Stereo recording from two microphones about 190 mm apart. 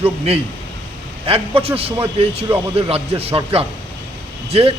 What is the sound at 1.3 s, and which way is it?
A man's voice, 30° right (ahead or behind).